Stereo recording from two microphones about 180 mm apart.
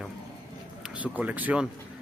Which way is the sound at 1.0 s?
10° right (ahead or behind).